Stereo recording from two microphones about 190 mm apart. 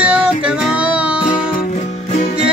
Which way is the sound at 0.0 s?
5° right (ahead or behind).